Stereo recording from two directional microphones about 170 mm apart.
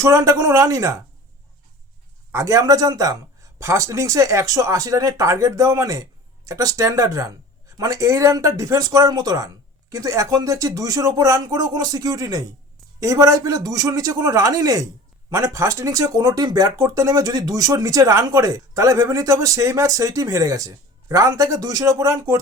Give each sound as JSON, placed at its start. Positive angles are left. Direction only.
{"t": 0.0, "sound": "speech", "side_deg": -15}
{"t": 2.3, "sound": "speech", "side_deg": -15}